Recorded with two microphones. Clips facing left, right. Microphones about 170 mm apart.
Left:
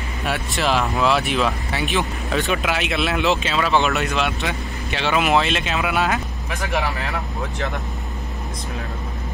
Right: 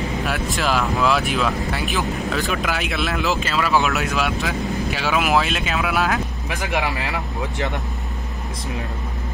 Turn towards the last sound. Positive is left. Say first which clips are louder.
# right 1 dB
turn(degrees=0)  # may be behind; listen again after turning